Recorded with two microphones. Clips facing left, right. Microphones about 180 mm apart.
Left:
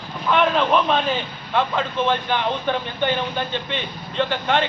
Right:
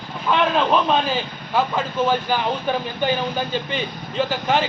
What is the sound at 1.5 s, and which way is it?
Speech, 5° right (ahead or behind).